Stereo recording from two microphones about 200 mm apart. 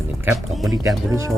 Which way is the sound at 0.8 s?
15° right (ahead or behind).